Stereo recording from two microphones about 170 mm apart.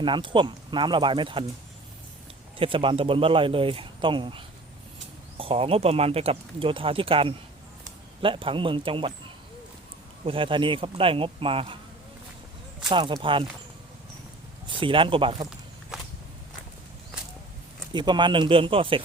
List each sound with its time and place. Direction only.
0.0 s speech: 30° right (ahead or behind)
2.6 s speech: 30° right (ahead or behind)
10.2 s speech: 30° right (ahead or behind)
12.9 s speech: 30° right (ahead or behind)
14.7 s speech: 30° right (ahead or behind)
15.9 s walk: 5° right (ahead or behind)
17.9 s speech: 25° right (ahead or behind)